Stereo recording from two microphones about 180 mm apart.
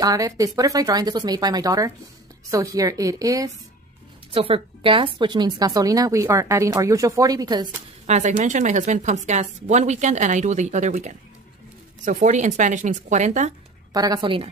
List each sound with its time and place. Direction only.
0.0 s a woman's voice: 20° right (ahead or behind)
4.3 s a woman's voice: 30° right (ahead or behind)
8.1 s speech: 40° right (ahead or behind)
13.9 s a woman's voice: 20° right (ahead or behind)